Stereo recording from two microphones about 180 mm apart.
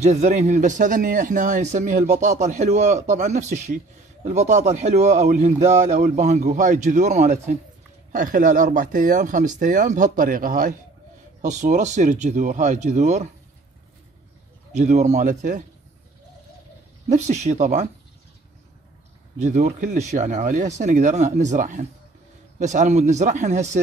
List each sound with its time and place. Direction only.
0.0 s speech: 40° right (ahead or behind)
14.7 s speech: 40° right (ahead or behind)
17.1 s speech: 40° right (ahead or behind)
19.3 s speech: 40° right (ahead or behind)